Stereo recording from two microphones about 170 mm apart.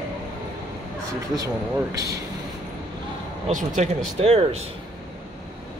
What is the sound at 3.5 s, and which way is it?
Speech, 45° right (ahead or behind).